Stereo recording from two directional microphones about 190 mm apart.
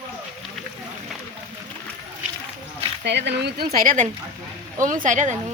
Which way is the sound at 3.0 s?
65° right (ahead or behind).